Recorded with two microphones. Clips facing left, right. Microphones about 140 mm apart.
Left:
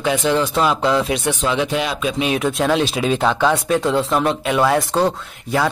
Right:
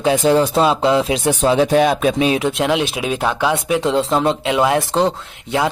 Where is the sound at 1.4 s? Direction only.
45° right (ahead or behind).